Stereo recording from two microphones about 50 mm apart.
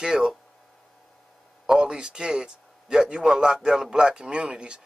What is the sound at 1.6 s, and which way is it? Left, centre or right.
A man's voice, centre.